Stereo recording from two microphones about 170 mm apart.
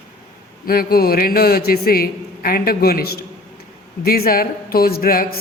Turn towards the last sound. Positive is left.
turn(degrees=60)  # may be behind; listen again after turning